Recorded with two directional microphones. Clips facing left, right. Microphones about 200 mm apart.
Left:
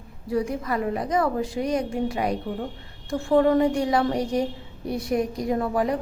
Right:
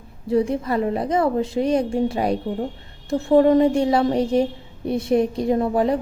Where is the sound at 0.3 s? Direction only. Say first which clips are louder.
Right 5 dB; 25° right (ahead or behind).